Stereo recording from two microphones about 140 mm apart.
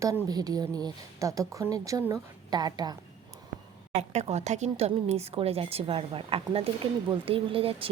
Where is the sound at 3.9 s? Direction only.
50° right (ahead or behind).